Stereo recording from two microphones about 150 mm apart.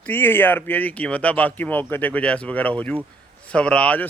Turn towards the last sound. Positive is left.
turn(degrees=10)  # may be behind; listen again after turning